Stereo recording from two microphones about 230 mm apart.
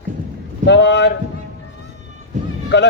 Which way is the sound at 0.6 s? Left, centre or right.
Left.